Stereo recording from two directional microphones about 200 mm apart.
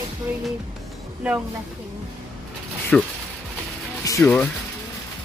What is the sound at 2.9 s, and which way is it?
Speech, 5° left (ahead or behind).